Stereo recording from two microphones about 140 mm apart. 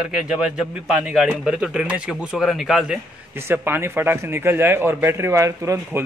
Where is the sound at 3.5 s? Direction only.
15° right (ahead or behind).